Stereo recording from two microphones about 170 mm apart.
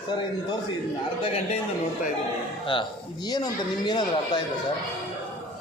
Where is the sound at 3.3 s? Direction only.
25° left (ahead or behind).